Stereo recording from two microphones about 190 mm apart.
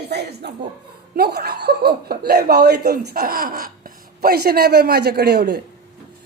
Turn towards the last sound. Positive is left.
turn(degrees=-60)  # may be behind; listen again after turning